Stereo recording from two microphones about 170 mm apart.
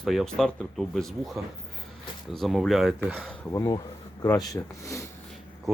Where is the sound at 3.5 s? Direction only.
20° left (ahead or behind).